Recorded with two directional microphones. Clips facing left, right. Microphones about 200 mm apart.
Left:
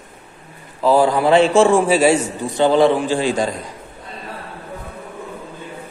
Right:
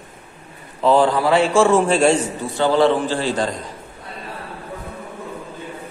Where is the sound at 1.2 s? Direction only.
20° left (ahead or behind).